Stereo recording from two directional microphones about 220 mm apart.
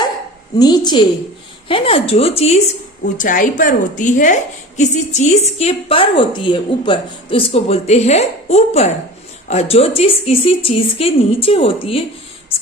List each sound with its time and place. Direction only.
0.6 s a woman's voice: 20° left (ahead or behind)